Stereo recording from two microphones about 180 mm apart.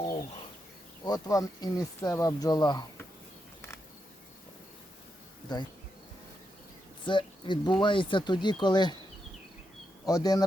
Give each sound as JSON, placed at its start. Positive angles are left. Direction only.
{"t": 1.0, "sound": "speech", "side_deg": 20}
{"t": 5.5, "sound": "speech", "side_deg": 25}
{"t": 7.0, "sound": "speech", "side_deg": 25}
{"t": 10.1, "sound": "speech", "side_deg": 20}